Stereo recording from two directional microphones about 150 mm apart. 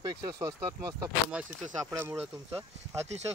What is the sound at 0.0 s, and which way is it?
Speech, 25° right (ahead or behind).